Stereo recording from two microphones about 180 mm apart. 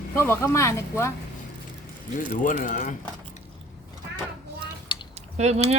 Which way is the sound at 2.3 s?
45° left (ahead or behind).